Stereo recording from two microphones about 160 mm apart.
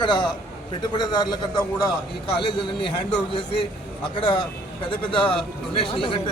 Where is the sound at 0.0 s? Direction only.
30° left (ahead or behind).